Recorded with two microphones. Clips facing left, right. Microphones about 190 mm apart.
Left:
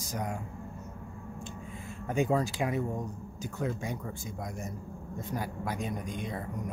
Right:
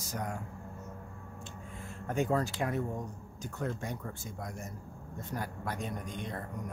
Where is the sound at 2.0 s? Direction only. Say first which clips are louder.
Left 2 dB; 10° left (ahead or behind).